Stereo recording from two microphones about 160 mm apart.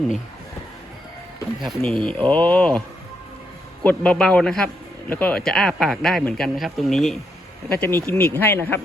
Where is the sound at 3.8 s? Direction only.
10° left (ahead or behind).